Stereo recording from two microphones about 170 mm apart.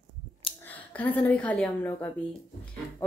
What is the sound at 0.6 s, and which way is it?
A woman's voice, 10° left (ahead or behind).